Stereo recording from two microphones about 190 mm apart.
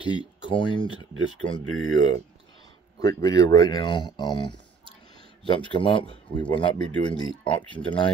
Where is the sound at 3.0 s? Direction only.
20° left (ahead or behind).